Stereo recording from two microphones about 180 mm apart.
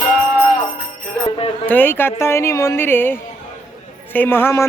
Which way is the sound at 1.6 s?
10° left (ahead or behind).